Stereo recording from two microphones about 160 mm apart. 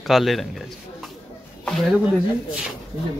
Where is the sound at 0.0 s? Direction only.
Centre (ahead or behind).